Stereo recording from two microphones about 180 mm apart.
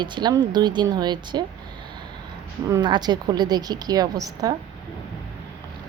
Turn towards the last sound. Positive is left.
turn(degrees=-20)  # may be behind; listen again after turning